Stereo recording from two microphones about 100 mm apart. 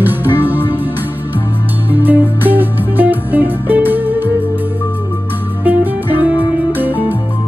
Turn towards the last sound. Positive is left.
turn(degrees=-20)  # may be behind; listen again after turning